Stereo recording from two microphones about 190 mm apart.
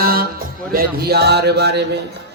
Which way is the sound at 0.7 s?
55° right (ahead or behind).